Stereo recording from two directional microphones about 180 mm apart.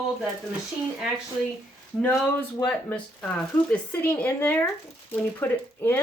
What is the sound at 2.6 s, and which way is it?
Speech, 5° left (ahead or behind).